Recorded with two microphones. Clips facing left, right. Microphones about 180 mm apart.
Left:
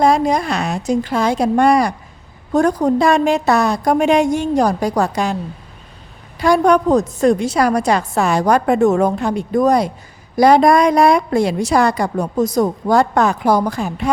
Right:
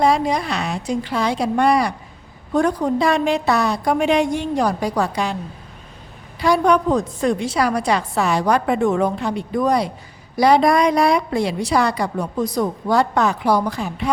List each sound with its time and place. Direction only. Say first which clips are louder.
0.0 s a woman's voice: left 3 dB; 45° left (ahead or behind)
6.4 s a woman's voice: left 3 dB; 45° left (ahead or behind)